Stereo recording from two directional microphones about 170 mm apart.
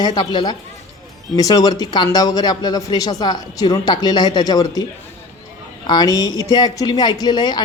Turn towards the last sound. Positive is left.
turn(degrees=25)  # may be behind; listen again after turning